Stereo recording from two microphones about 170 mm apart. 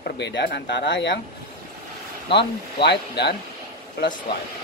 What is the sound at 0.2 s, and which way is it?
Speech, 85° left.